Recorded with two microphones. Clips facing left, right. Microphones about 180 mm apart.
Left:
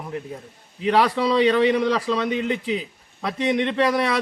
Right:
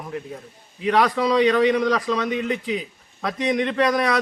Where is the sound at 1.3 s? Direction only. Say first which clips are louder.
Even; 30° left (ahead or behind).